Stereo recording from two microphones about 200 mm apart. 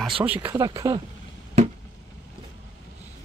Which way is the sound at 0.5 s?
20° right (ahead or behind).